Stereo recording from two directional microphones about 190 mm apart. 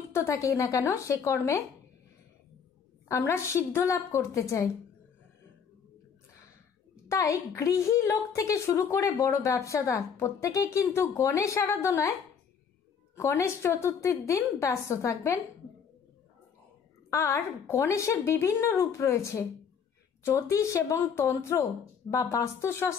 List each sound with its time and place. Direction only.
0.1 s a woman's voice: 15° left (ahead or behind)
3.1 s a woman's voice: 15° left (ahead or behind)
7.1 s a woman's voice: 15° left (ahead or behind)
17.1 s a woman's voice: 15° left (ahead or behind)